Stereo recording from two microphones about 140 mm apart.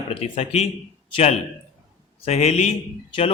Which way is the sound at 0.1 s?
50° left (ahead or behind).